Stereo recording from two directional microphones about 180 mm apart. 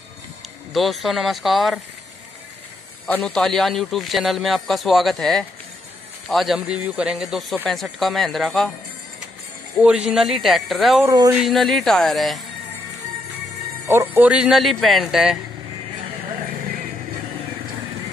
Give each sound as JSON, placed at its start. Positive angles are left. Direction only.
{"t": 0.7, "sound": "a man's voice", "side_deg": 0}
{"t": 3.1, "sound": "a man's voice", "side_deg": 5}
{"t": 9.8, "sound": "a man's voice", "side_deg": -5}
{"t": 11.1, "sound": "speech", "side_deg": -20}
{"t": 11.3, "sound": "a man's voice", "side_deg": 0}
{"t": 13.8, "sound": "a man's voice", "side_deg": -15}